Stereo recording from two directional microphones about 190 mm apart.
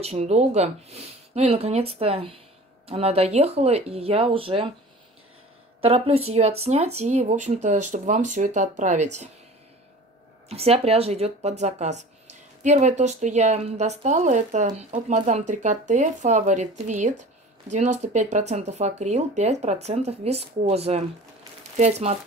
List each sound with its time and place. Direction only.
0.0 s speech: 35° right (ahead or behind)
5.8 s speech: 35° right (ahead or behind)
10.5 s speech: 30° right (ahead or behind)